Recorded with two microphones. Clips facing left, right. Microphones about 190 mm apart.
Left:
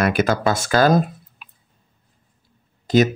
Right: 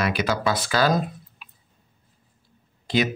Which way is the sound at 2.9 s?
45° left (ahead or behind).